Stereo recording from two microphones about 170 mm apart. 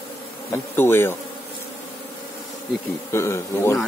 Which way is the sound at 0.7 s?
15° left (ahead or behind).